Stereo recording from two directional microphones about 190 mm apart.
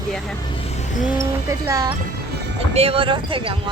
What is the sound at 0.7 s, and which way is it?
Music, 35° left (ahead or behind).